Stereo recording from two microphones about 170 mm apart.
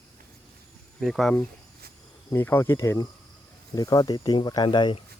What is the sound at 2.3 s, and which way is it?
Speech, 15° left (ahead or behind).